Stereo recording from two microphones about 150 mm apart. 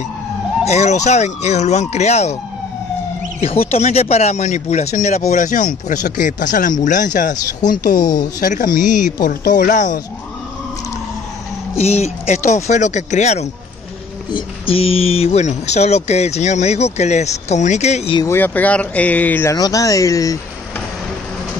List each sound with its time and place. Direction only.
0.7 s speech: 50° left (ahead or behind)
3.3 s speech: 45° left (ahead or behind)
11.7 s speech: 45° left (ahead or behind)
18.3 s speech: 10° left (ahead or behind)
19.5 s speech: 25° left (ahead or behind)